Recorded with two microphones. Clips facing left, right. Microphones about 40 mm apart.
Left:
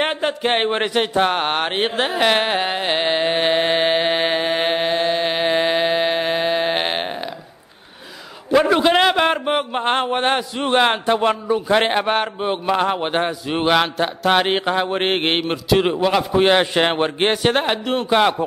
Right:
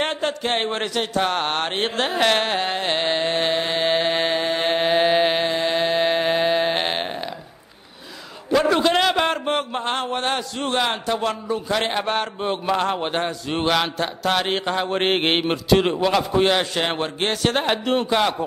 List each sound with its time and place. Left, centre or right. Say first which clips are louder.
0.0 s a man's voice: left 3 dB; centre
3.5 s a man's voice: left 4 dB; left
3.9 s mantra: left 2 dB; centre
4.7 s chant: right 1 dB; centre
5.7 s mantra: left 2 dB; centre
8.5 s a man's voice: left 3 dB; centre
9.8 s a man's voice: left 8 dB; left; by 16.4 s centre
16.4 s a man's voice: left 5 dB; left
17.6 s speech: left 1 dB; centre